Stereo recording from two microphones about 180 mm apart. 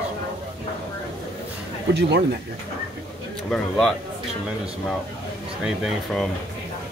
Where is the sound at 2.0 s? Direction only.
70° right (ahead or behind).